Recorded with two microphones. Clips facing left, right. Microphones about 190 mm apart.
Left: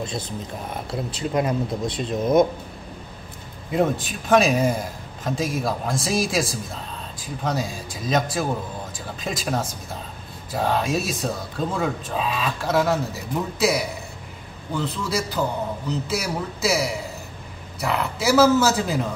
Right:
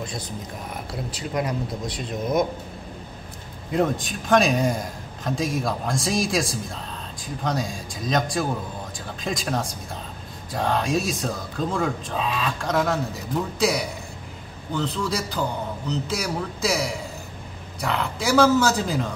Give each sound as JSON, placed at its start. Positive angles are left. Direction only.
{"t": 1.1, "sound": "speech", "side_deg": 25}
{"t": 3.7, "sound": "speech", "side_deg": 5}